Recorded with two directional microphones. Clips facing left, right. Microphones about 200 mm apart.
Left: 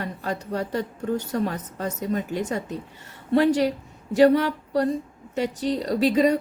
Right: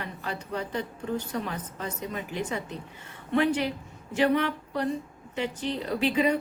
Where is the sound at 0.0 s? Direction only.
40° left (ahead or behind).